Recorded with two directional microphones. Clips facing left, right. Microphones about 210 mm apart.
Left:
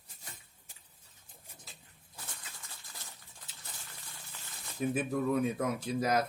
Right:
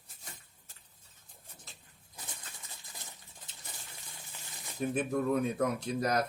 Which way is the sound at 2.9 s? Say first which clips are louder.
Right 1 dB; 20° right (ahead or behind).